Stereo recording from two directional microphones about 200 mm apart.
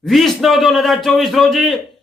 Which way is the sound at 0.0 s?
Centre (ahead or behind).